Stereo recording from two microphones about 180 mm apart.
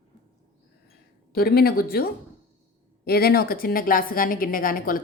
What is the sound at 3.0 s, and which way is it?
A woman's voice, 60° left (ahead or behind).